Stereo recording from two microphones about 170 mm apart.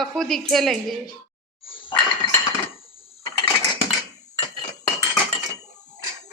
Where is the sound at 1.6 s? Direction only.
30° left (ahead or behind).